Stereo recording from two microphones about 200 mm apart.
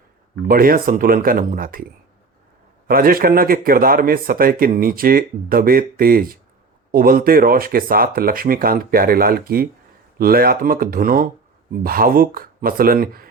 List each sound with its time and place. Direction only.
0.4 s a man's voice: 45° right (ahead or behind)
2.8 s a man's voice: 45° right (ahead or behind)